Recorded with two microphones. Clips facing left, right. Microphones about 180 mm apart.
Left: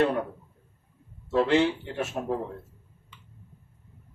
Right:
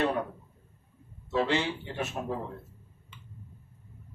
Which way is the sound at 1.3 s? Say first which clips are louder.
Left 6 dB; 55° left (ahead or behind).